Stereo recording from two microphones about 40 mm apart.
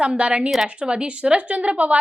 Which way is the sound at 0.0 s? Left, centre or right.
Right.